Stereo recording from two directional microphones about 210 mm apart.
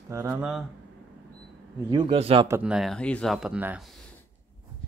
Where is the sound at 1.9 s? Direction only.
25° right (ahead or behind).